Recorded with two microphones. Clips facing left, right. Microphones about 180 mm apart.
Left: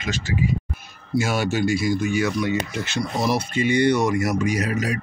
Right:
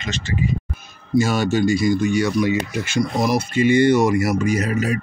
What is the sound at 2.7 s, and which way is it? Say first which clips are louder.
Speech: right 5 dB; 10° right (ahead or behind).